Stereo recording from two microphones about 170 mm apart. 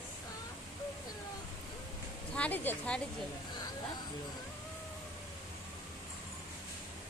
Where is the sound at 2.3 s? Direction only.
10° left (ahead or behind).